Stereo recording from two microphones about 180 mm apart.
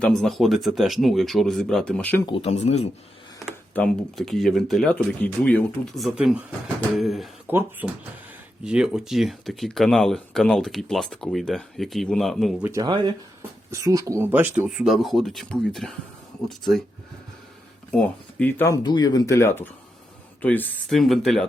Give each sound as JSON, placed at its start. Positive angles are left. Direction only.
{"t": 0.0, "sound": "speech", "side_deg": 0}
{"t": 2.2, "sound": "speech", "side_deg": 35}
{"t": 3.4, "sound": "speech", "side_deg": 5}
{"t": 12.7, "sound": "speech", "side_deg": -25}
{"t": 17.9, "sound": "speech", "side_deg": 5}